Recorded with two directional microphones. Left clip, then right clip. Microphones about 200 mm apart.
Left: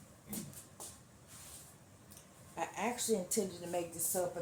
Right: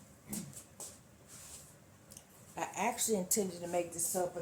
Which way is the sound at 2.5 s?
60° right (ahead or behind).